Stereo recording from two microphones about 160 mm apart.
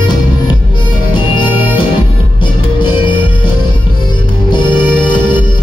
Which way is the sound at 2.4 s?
30° left (ahead or behind).